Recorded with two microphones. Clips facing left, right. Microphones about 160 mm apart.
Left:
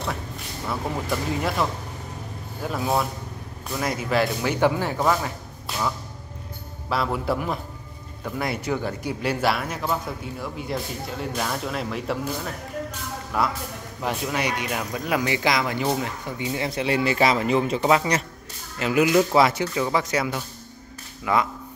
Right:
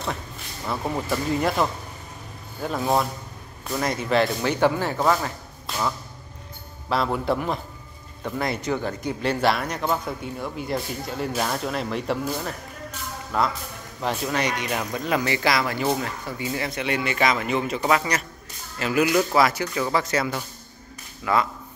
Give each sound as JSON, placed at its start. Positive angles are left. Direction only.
{"t": 0.7, "sound": "speech", "side_deg": 0}
{"t": 6.9, "sound": "speech", "side_deg": 5}
{"t": 13.3, "sound": "speech", "side_deg": 10}